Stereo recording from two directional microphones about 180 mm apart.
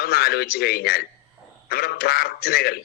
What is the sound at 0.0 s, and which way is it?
Speech, 60° left (ahead or behind).